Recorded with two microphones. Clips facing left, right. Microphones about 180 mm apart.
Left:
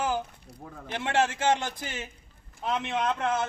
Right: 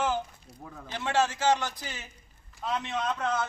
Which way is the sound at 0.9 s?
55° left (ahead or behind).